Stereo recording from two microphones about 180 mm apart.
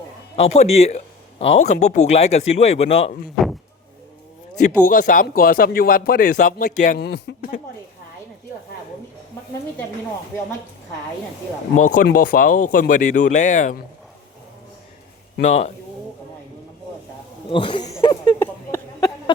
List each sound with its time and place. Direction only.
0.3 s speech: 35° left (ahead or behind)
3.4 s a sound: centre (ahead or behind)
4.6 s speech: 45° left (ahead or behind)
7.0 s speech: 65° left (ahead or behind)
11.8 s speech: 45° left (ahead or behind)
15.4 s speech: 40° left (ahead or behind)
17.5 s speech: 30° left (ahead or behind)
18.3 s a sound: 15° left (ahead or behind)